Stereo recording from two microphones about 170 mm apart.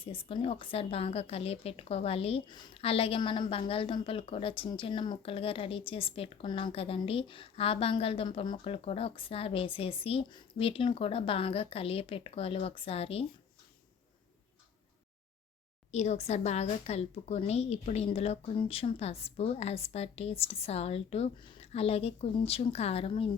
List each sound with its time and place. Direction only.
0.0 s a woman's voice: 35° left (ahead or behind)
15.9 s a woman's voice: 40° left (ahead or behind)